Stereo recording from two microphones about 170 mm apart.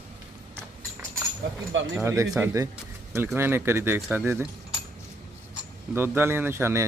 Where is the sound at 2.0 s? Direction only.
15° right (ahead or behind).